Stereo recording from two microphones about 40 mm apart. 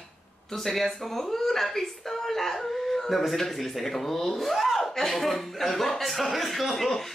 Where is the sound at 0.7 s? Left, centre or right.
Centre.